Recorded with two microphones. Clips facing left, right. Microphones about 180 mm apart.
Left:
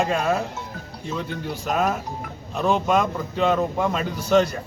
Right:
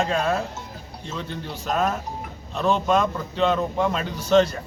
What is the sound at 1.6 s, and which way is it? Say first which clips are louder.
A man's voice: even; 5° left (ahead or behind).